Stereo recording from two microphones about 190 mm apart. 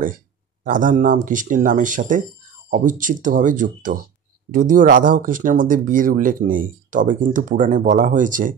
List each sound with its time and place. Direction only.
0.7 s speech: 45° right (ahead or behind)